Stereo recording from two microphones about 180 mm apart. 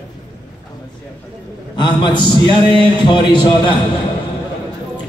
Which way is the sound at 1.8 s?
25° left (ahead or behind).